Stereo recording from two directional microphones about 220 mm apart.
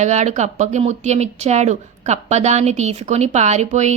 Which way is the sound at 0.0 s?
30° right (ahead or behind).